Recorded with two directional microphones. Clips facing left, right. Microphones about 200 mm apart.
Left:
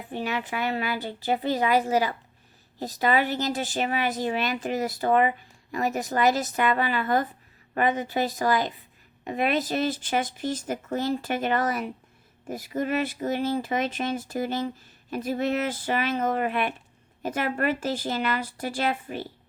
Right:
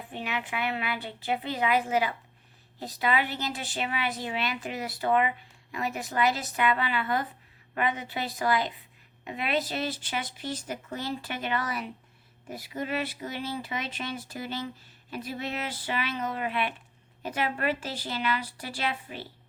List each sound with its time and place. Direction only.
0.1 s a woman's voice: 40° left (ahead or behind)